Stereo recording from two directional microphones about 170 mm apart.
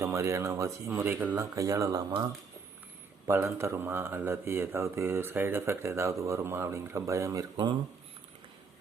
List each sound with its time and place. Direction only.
0.0 s speech: 15° right (ahead or behind)
7.5 s speech: 30° right (ahead or behind)